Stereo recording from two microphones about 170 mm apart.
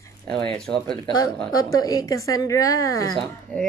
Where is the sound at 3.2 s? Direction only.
5° left (ahead or behind).